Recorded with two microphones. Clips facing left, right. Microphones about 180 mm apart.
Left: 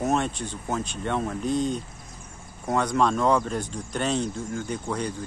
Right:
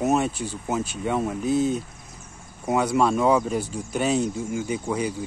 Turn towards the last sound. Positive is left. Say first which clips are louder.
# right 3 dB
turn(degrees=-5)  # may be behind; listen again after turning